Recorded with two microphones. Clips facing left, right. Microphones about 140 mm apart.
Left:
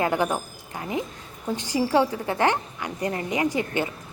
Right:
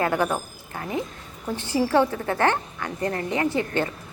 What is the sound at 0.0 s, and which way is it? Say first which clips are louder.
A woman's voice: even; 20° left (ahead or behind).